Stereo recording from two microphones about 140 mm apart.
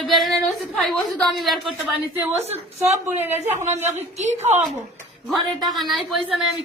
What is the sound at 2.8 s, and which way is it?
Speech, 15° right (ahead or behind).